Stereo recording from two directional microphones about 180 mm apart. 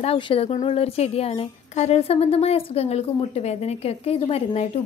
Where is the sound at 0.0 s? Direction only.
35° left (ahead or behind).